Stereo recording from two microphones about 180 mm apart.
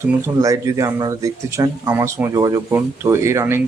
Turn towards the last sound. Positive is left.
turn(degrees=-15)  # may be behind; listen again after turning